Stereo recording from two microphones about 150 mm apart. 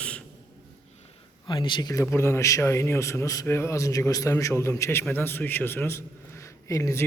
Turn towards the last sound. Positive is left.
turn(degrees=20)  # may be behind; listen again after turning